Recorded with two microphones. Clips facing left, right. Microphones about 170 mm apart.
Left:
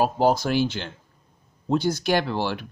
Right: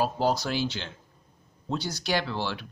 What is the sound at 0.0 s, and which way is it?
Speech, 50° left (ahead or behind).